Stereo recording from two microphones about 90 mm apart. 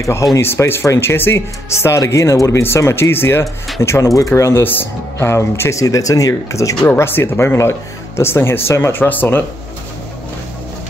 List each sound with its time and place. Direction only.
0.0 s speech: 35° left (ahead or behind)
6.9 s speech: 25° left (ahead or behind)